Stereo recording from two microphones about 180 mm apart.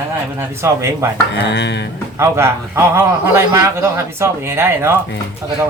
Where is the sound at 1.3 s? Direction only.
75° left (ahead or behind).